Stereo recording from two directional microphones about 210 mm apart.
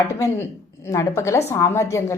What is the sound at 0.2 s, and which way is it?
A woman's voice, 15° left (ahead or behind).